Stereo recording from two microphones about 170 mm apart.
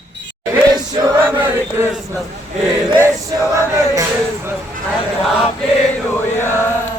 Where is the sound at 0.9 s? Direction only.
20° right (ahead or behind).